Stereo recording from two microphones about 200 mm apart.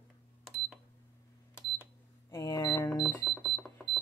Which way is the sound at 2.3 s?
15° left (ahead or behind).